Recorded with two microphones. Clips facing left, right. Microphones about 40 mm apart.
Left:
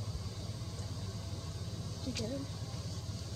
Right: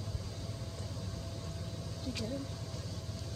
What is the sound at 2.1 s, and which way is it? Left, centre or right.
Speech, centre.